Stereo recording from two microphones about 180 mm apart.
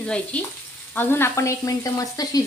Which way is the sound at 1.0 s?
15° left (ahead or behind).